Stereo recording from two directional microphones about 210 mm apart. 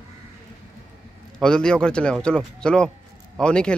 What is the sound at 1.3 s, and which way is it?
Speech, 5° left (ahead or behind).